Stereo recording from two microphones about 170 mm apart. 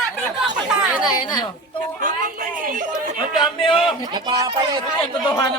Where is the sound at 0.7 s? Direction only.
5° right (ahead or behind).